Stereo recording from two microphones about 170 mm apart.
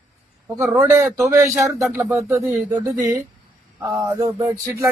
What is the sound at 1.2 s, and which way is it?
Speech, 15° right (ahead or behind).